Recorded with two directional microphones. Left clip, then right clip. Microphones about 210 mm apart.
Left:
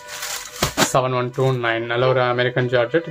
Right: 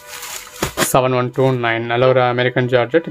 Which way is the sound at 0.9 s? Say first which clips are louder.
Right 4 dB; 45° right (ahead or behind).